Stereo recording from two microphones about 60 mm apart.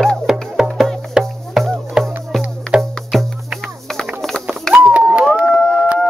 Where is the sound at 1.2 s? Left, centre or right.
Centre.